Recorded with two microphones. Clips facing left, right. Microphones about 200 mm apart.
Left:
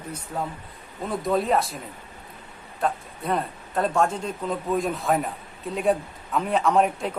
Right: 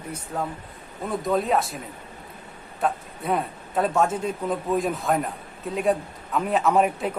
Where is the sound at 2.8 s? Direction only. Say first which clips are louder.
Right 1 dB; 5° right (ahead or behind).